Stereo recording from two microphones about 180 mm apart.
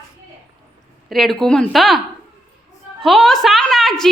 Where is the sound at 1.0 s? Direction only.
Centre (ahead or behind).